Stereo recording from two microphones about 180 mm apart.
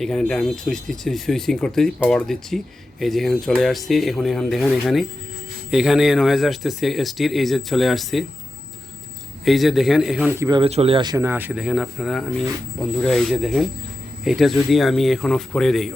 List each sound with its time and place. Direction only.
0.0 s speech: centre (ahead or behind)
9.4 s speech: centre (ahead or behind)
10.3 s speech: 15° right (ahead or behind)
10.6 s speech: 35° right (ahead or behind); by 15.9 s centre (ahead or behind)